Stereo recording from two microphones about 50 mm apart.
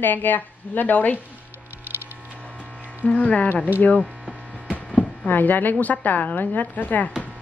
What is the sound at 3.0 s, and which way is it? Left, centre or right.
Speech, left.